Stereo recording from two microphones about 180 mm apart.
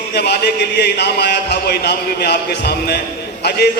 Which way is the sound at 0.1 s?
65° left (ahead or behind).